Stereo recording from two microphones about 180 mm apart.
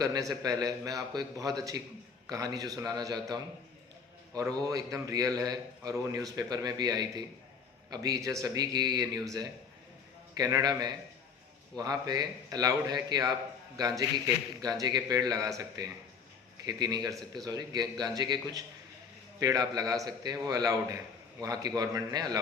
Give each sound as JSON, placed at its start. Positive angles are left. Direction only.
{"t": 0.0, "sound": "a man's voice", "side_deg": -20}